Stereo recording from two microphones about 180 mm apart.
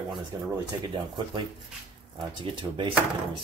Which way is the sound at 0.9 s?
25° right (ahead or behind).